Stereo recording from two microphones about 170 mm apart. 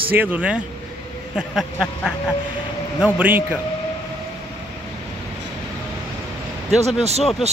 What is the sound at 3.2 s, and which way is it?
Speech, 10° right (ahead or behind).